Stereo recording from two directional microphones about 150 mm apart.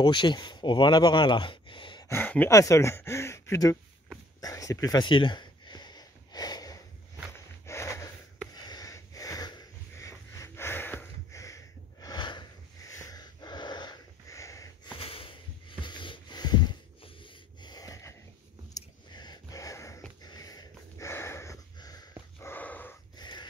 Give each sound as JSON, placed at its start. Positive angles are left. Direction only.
{"t": 0.0, "sound": "speech", "side_deg": 30}
{"t": 2.0, "sound": "speech", "side_deg": 15}
{"t": 4.4, "sound": "a sound", "side_deg": 20}
{"t": 7.6, "sound": "snort", "side_deg": 20}
{"t": 8.5, "sound": "sniff", "side_deg": 25}
{"t": 14.9, "sound": "sniff", "side_deg": 40}
{"t": 15.8, "sound": "a sound", "side_deg": 30}
{"t": 20.2, "sound": "dog", "side_deg": 25}
{"t": 23.1, "sound": "crow", "side_deg": 30}